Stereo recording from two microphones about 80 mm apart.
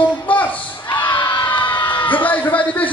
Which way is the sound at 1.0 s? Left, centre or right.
Left.